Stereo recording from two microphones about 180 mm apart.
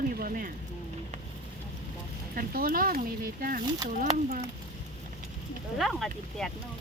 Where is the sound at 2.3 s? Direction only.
55° right (ahead or behind).